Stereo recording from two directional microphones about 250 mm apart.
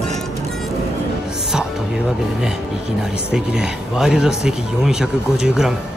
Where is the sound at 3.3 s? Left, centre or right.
Centre.